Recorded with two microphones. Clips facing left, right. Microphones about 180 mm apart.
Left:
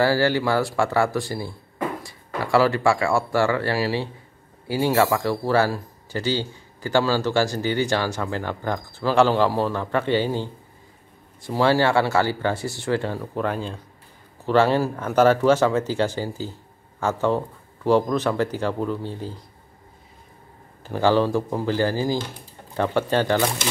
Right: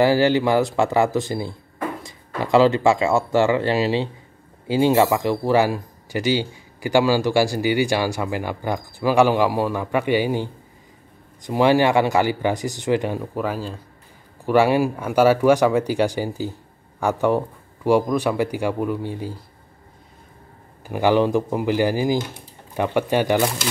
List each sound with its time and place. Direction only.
0.0 s a man's voice: 20° right (ahead or behind)
20.8 s a man's voice: 15° right (ahead or behind)